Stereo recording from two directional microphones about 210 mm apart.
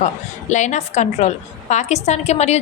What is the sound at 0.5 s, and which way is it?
A woman's voice, 35° left (ahead or behind).